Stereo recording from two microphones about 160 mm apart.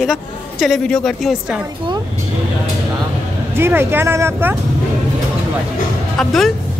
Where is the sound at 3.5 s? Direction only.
15° right (ahead or behind).